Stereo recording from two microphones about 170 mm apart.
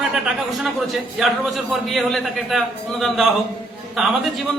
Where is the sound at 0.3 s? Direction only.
Centre (ahead or behind).